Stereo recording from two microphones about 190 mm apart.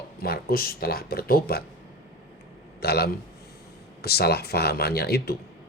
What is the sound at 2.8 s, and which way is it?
A man's voice, 55° left (ahead or behind).